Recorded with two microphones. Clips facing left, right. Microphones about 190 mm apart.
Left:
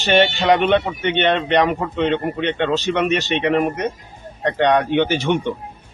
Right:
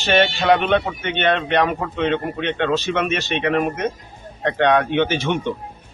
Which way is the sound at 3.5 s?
10° left (ahead or behind).